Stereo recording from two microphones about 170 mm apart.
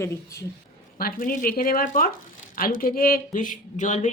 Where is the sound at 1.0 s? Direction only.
55° left (ahead or behind).